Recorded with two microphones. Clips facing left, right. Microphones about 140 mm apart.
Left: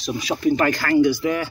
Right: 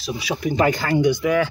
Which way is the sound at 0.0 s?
10° right (ahead or behind).